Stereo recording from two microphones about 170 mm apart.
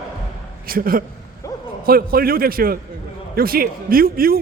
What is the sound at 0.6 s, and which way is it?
A man's voice, 55° right (ahead or behind).